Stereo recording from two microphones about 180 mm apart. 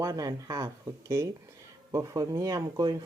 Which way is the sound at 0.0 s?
20° right (ahead or behind).